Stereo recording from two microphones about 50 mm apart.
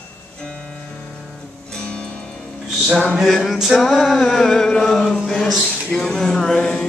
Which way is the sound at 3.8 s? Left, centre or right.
Centre.